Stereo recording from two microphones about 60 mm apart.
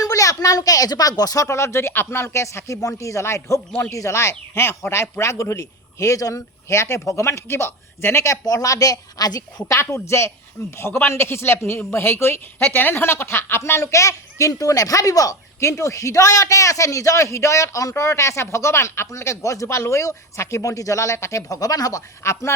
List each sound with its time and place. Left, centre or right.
0.0 s speech: left
1.5 s a woman's voice: left
9.7 s a woman's voice: left
15.6 s speech: left
21.5 s speech: left
22.2 s a woman's voice: left